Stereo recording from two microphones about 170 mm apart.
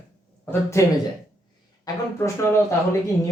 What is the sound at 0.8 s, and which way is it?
Speech, 15° left (ahead or behind).